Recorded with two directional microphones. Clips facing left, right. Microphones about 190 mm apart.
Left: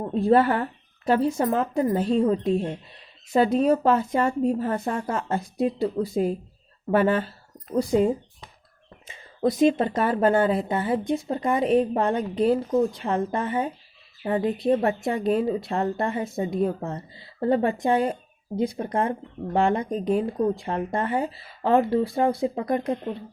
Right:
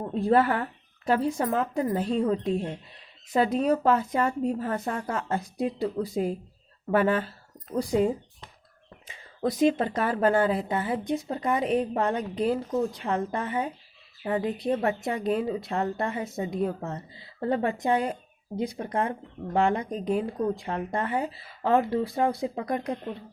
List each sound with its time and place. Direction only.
0.1 s speech: 25° left (ahead or behind)
9.0 s speech: 25° left (ahead or behind)